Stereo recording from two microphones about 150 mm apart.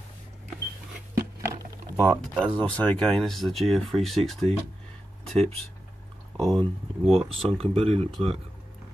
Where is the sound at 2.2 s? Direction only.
5° left (ahead or behind).